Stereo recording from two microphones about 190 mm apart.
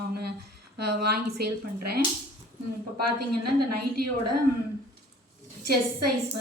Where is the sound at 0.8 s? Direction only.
55° right (ahead or behind).